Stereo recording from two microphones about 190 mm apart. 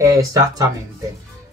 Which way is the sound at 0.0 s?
15° right (ahead or behind).